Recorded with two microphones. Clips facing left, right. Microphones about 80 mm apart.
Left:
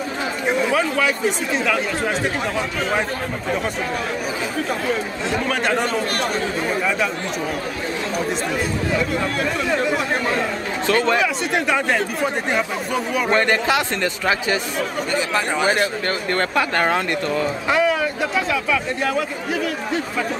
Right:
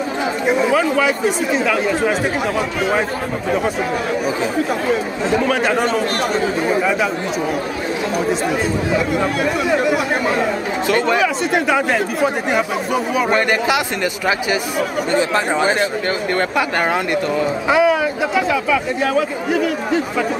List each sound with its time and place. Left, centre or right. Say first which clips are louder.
0.5 s speech: right 4 dB; centre
5.3 s speech: right 4 dB; centre
8.3 s speech: right 4 dB; centre